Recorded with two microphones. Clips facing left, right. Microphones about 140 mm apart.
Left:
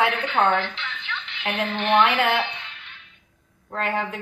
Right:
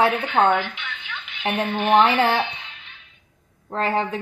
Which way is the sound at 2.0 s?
30° right (ahead or behind).